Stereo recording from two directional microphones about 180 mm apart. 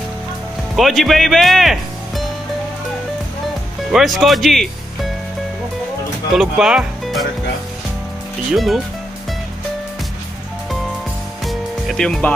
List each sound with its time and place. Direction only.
0.7 s speech: centre (ahead or behind)
3.9 s speech: centre (ahead or behind)
6.3 s speech: centre (ahead or behind)
8.5 s speech: centre (ahead or behind)
11.4 s music: centre (ahead or behind)